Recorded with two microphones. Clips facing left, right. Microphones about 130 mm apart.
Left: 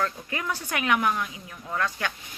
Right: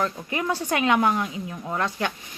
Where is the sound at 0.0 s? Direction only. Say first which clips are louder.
Right 3 dB; 20° right (ahead or behind).